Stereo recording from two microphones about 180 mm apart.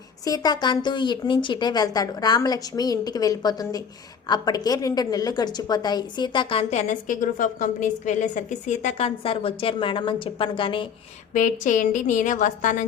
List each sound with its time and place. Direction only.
0.3 s a woman's voice: 20° left (ahead or behind)
11.3 s a woman's voice: 45° left (ahead or behind)